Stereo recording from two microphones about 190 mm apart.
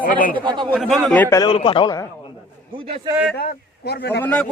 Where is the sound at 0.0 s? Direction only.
45° left (ahead or behind).